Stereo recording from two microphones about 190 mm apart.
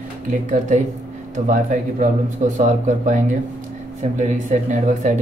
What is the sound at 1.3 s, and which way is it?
Speech, 45° right (ahead or behind).